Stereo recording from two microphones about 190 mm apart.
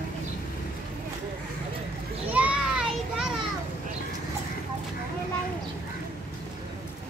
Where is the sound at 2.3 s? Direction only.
5° right (ahead or behind).